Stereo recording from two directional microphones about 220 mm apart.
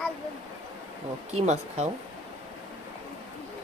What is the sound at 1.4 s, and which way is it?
Speech, 30° right (ahead or behind).